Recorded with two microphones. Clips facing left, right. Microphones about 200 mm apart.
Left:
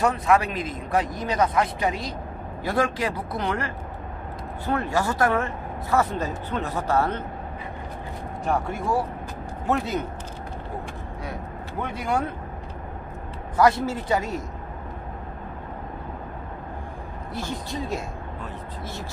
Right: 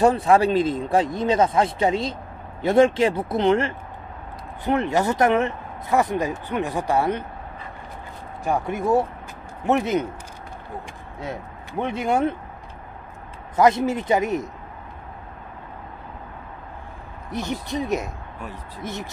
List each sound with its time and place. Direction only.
0.0 s speech: 30° right (ahead or behind); by 7.2 s 15° right (ahead or behind)
8.5 s speech: 20° right (ahead or behind)
11.8 s speech: 25° right (ahead or behind)
13.6 s speech: 20° right (ahead or behind)
17.3 s speech: 20° right (ahead or behind)